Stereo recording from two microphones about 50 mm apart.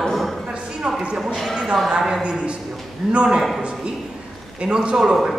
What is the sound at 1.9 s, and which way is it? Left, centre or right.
A man's voice, centre.